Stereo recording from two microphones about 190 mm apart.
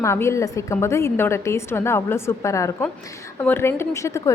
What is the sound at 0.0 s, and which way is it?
A woman's voice, 15° left (ahead or behind).